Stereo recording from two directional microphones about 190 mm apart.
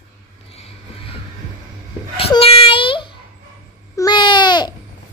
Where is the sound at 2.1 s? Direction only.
30° left (ahead or behind).